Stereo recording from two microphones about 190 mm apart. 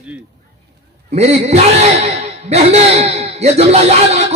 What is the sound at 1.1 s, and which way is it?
A man's voice, 35° right (ahead or behind).